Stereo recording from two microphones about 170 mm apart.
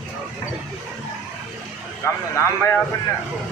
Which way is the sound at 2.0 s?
15° left (ahead or behind).